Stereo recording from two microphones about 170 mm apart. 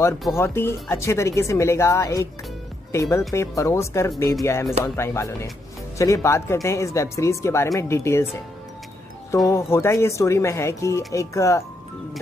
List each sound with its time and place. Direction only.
0.3 s speech: 15° left (ahead or behind)
9.5 s speech: 15° left (ahead or behind)